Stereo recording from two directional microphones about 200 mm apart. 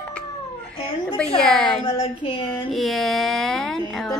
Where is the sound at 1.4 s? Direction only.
Centre (ahead or behind).